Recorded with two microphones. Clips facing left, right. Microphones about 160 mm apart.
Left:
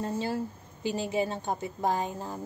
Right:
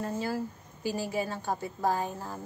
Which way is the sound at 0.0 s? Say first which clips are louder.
Left 1 dB; 25° left (ahead or behind).